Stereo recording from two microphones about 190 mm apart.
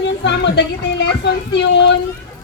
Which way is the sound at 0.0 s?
65° left (ahead or behind).